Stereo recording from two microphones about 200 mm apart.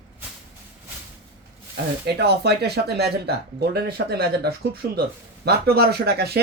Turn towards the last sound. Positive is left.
turn(degrees=-55)  # may be behind; listen again after turning